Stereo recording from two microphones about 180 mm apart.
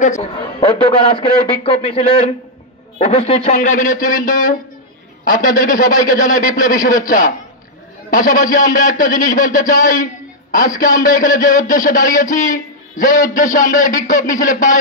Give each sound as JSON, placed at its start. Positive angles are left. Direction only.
{"t": 0.0, "sound": "a man's voice", "side_deg": 40}
{"t": 0.7, "sound": "a man's voice", "side_deg": 30}
{"t": 3.5, "sound": "a man's voice", "side_deg": 45}
{"t": 5.6, "sound": "a man's voice", "side_deg": 50}
{"t": 8.1, "sound": "a man's voice", "side_deg": 50}